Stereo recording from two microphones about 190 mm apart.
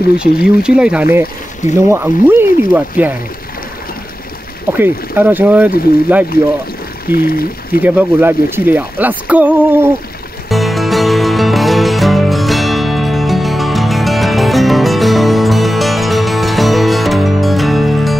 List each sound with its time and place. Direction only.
0.6 s speech: 5° right (ahead or behind)
4.7 s speech: 10° right (ahead or behind)
7.1 s speech: 50° left (ahead or behind)
7.8 s speech: 10° right (ahead or behind)
10.5 s music: centre (ahead or behind)